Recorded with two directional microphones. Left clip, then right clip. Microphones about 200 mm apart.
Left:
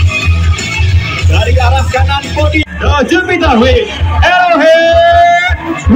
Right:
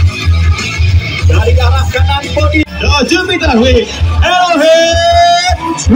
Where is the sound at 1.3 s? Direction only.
60° right (ahead or behind).